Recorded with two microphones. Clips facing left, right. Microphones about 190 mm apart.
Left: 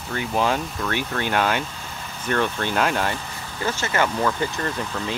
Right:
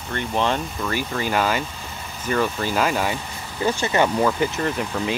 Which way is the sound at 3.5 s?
15° right (ahead or behind).